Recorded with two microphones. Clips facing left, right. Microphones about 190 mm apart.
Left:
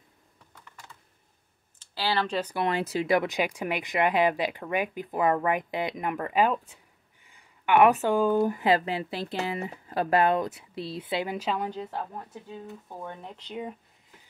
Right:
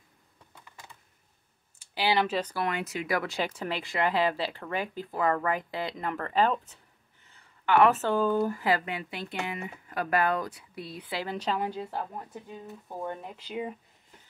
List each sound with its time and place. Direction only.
1.8 s computer keyboard: 15° right (ahead or behind)
2.4 s speech: 20° left (ahead or behind)
11.3 s speech: 5° left (ahead or behind)
11.6 s speech: 10° right (ahead or behind)